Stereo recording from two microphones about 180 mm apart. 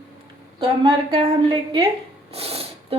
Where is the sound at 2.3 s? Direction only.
35° right (ahead or behind).